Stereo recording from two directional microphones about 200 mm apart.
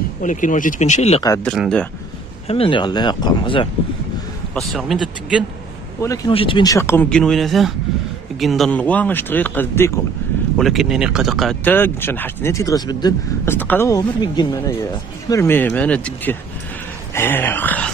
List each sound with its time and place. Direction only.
0.2 s speech: 40° left (ahead or behind)
1.4 s speech: 5° left (ahead or behind)
2.4 s speech: 30° left (ahead or behind)
4.6 s speech: centre (ahead or behind)
5.9 s speech: 15° left (ahead or behind)
10.6 s speech: centre (ahead or behind)